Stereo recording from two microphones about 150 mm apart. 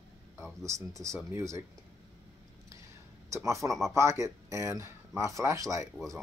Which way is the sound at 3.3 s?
20° right (ahead or behind).